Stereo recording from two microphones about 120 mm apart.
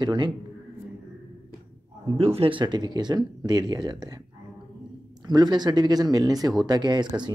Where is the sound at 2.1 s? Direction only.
55° right (ahead or behind).